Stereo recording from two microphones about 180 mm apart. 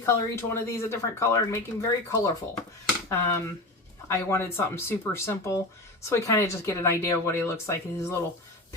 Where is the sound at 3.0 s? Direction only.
15° left (ahead or behind).